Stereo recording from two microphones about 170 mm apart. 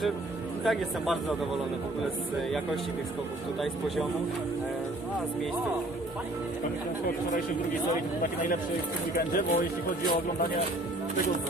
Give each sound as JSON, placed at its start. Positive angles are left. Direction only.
{"t": 0.7, "sound": "a man's voice", "side_deg": 0}
{"t": 7.9, "sound": "speech", "side_deg": 50}